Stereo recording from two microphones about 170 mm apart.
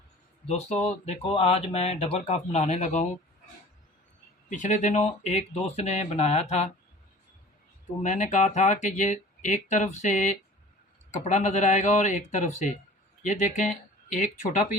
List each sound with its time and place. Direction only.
0.4 s speech: 40° left (ahead or behind)
4.4 s speech: 45° left (ahead or behind)
8.0 s speech: 45° left (ahead or behind)